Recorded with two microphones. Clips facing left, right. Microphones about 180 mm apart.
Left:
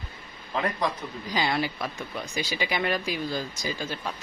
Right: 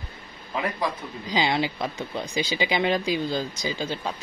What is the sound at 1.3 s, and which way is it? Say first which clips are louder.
Speech: right 3 dB; 20° right (ahead or behind).